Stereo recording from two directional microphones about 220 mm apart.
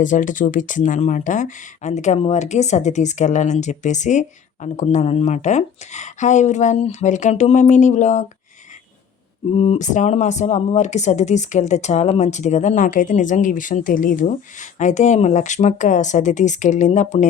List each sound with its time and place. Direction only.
0.0 s speech: 35° left (ahead or behind)
9.6 s speech: 30° left (ahead or behind)